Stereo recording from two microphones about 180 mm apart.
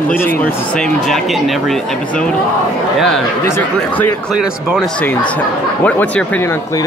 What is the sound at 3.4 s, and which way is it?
Speech, 15° left (ahead or behind).